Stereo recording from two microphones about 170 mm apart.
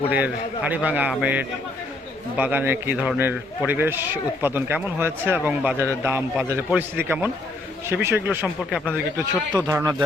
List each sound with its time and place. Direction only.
0.1 s a man's voice: 10° right (ahead or behind)